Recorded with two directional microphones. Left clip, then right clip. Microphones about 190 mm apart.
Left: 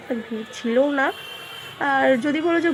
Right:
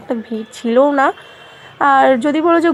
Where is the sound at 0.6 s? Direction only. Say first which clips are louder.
Right 8 dB; 25° right (ahead or behind).